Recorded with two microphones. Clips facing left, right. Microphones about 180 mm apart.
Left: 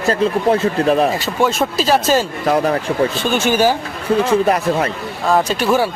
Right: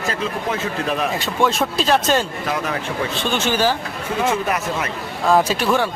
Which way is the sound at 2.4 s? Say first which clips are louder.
Left 8 dB; 40° left (ahead or behind).